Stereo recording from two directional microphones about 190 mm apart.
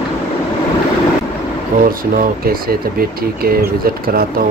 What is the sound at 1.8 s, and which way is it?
Speech, 50° right (ahead or behind).